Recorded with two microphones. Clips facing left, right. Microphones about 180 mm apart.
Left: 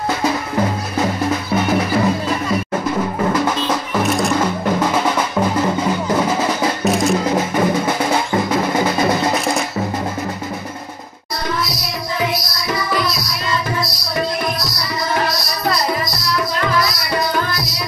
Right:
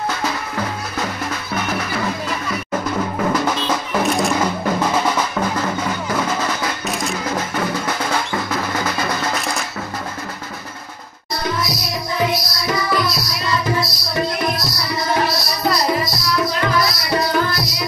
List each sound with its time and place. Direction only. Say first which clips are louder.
0.2 s music: left 5 dB; 20° left (ahead or behind)
4.0 s percussion: left 1 dB; centre (ahead or behind)
6.1 s music: left 2 dB; 25° left (ahead or behind)
6.8 s music: left 8 dB; centre (ahead or behind)
7.2 s music: left 5 dB; 20° left (ahead or behind)